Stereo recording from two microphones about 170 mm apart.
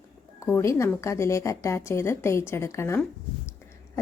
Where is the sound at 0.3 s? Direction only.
15° left (ahead or behind).